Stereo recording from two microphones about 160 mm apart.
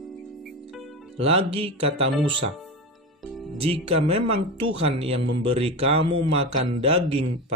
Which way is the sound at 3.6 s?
35° right (ahead or behind).